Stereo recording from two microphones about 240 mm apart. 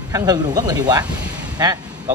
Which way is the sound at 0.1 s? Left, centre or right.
Centre.